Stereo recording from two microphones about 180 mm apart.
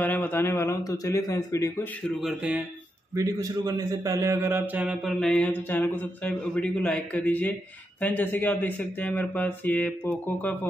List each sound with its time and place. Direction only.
0.0 s mantra: 10° left (ahead or behind)
3.2 s a man's voice: 20° right (ahead or behind)
4.8 s mantra: centre (ahead or behind)